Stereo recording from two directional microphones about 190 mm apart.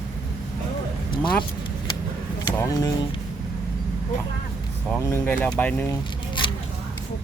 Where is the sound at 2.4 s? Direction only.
20° left (ahead or behind).